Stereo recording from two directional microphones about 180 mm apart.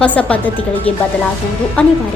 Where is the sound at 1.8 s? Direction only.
5° left (ahead or behind).